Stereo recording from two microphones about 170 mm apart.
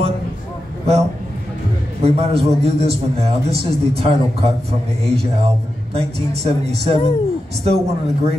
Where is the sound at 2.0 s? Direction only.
35° right (ahead or behind).